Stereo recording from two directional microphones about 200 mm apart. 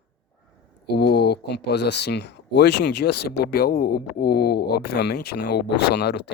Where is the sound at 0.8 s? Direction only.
55° left (ahead or behind).